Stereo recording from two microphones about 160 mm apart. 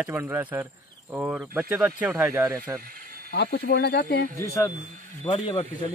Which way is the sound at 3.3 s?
90° left.